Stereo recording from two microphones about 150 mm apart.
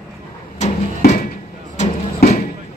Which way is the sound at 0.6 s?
50° left (ahead or behind).